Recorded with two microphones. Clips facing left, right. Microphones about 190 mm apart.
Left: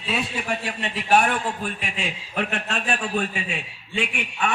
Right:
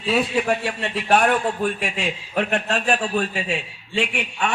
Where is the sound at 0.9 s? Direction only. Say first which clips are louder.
Right 2 dB; 55° right (ahead or behind).